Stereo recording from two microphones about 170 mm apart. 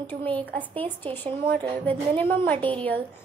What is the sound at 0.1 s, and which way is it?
Speech, 10° left (ahead or behind).